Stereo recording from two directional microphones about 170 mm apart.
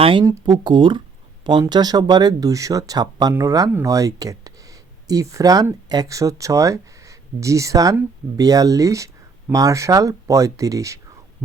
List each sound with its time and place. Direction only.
0.0 s speech: 30° right (ahead or behind)
0.3 s speech: 20° right (ahead or behind)